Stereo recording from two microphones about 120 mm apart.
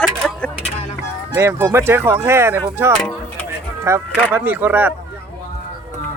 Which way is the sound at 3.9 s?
25° right (ahead or behind).